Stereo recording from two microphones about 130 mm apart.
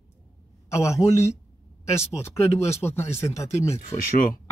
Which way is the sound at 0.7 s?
20° left (ahead or behind).